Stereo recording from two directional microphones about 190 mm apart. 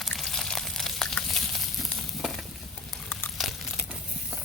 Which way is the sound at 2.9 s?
10° left (ahead or behind).